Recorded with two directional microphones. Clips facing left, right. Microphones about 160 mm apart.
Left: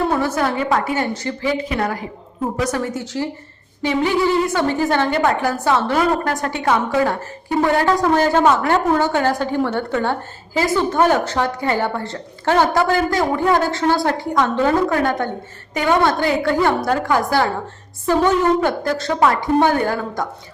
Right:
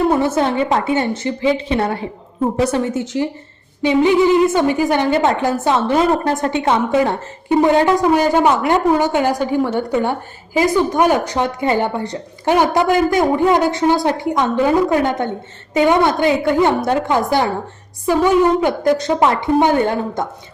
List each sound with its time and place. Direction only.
0.1 s a woman's voice: 20° right (ahead or behind)